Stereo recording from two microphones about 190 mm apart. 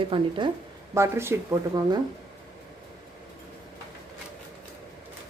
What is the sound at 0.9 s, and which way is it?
Speech, 15° right (ahead or behind).